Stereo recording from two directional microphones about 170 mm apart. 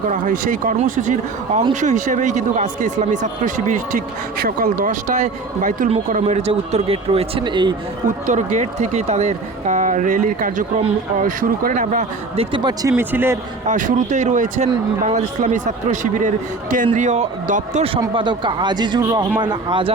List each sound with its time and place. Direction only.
0.1 s speech: 50° right (ahead or behind); by 7.8 s 25° right (ahead or behind)
8.3 s speech: 45° right (ahead or behind)
12.5 s speech: 25° right (ahead or behind)
12.9 s a man's voice: 10° right (ahead or behind)
13.7 s speech: 50° right (ahead or behind)
18.1 s speech: 30° right (ahead or behind)